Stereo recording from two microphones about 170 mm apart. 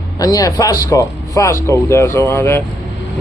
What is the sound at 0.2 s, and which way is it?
Speech, 20° left (ahead or behind).